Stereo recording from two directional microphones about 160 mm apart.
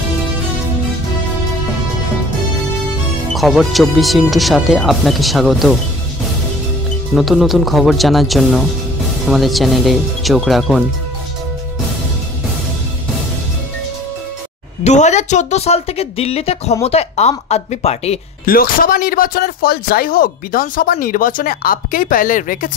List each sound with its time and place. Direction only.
3.3 s speech: centre (ahead or behind)
7.2 s speech: centre (ahead or behind)
14.8 s speech: 45° left (ahead or behind)
18.4 s speech: 65° left (ahead or behind)